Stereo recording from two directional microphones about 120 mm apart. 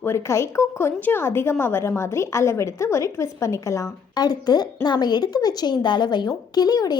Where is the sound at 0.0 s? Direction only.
20° left (ahead or behind).